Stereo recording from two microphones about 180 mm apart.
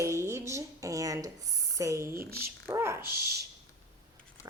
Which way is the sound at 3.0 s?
60° right (ahead or behind).